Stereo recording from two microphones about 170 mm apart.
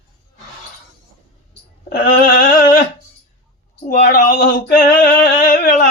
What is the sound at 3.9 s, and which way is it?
Male singing, 55° left (ahead or behind).